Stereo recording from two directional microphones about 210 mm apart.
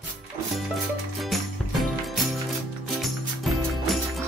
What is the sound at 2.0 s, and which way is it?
Music, centre (ahead or behind).